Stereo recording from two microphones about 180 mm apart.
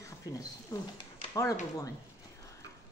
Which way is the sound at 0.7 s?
15° left (ahead or behind).